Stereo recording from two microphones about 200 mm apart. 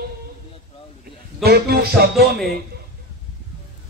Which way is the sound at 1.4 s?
50° right (ahead or behind).